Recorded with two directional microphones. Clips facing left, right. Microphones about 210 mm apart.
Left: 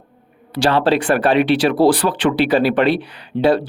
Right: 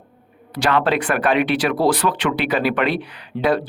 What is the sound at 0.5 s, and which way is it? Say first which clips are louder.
Speech: left 3 dB; 30° left (ahead or behind).